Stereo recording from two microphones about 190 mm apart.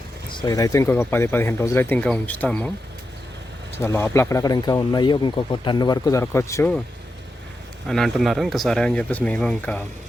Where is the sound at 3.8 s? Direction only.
15° left (ahead or behind).